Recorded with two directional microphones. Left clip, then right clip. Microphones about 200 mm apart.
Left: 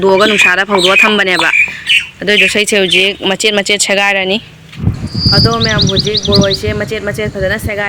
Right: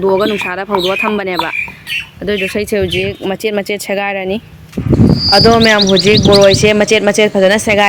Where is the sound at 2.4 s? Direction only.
5° right (ahead or behind).